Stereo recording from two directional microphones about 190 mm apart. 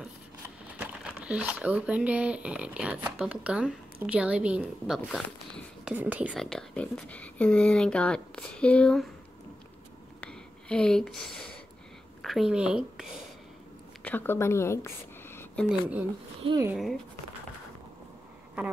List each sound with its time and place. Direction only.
0.7 s speech: 5° right (ahead or behind)
10.2 s a woman's voice: 5° left (ahead or behind)
14.0 s a woman's voice: 10° left (ahead or behind)
15.6 s speech: 10° right (ahead or behind)
16.4 s speech: 20° right (ahead or behind)